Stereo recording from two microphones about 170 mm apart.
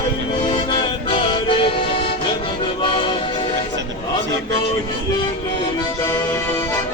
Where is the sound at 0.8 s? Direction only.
30° left (ahead or behind).